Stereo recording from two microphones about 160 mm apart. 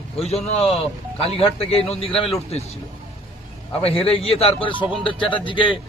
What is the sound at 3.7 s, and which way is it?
A man's voice, 35° left (ahead or behind).